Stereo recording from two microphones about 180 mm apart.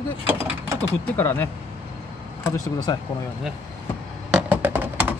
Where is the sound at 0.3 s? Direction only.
10° right (ahead or behind).